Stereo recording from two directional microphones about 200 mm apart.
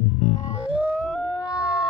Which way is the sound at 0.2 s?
30° left (ahead or behind).